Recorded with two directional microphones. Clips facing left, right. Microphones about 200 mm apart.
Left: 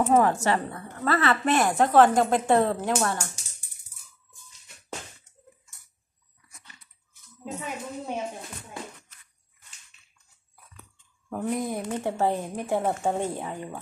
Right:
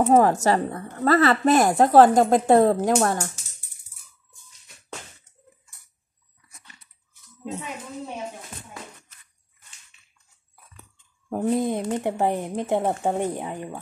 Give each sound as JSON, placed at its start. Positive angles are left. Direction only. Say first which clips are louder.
{"t": 0.0, "sound": "a woman's voice", "louder": "right 4 dB", "side_deg": -35}
{"t": 11.2, "sound": "speech", "louder": "right 6 dB", "side_deg": -30}